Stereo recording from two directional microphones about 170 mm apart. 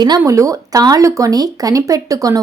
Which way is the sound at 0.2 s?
20° right (ahead or behind).